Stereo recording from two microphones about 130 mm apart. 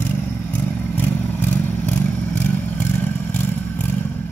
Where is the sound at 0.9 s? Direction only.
15° left (ahead or behind).